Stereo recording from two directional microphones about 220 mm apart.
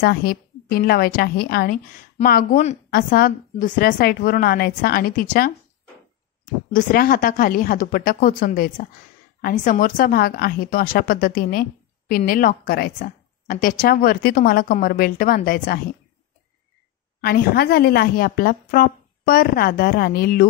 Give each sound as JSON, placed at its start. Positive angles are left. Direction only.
{"t": 0.0, "sound": "a woman's voice", "side_deg": 45}
{"t": 17.2, "sound": "a woman's voice", "side_deg": 45}